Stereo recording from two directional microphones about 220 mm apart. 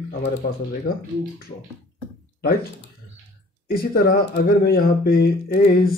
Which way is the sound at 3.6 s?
45° left (ahead or behind).